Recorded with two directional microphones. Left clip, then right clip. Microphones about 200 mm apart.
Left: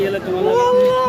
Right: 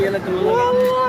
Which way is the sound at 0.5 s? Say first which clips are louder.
Left 3 dB; 60° left (ahead or behind).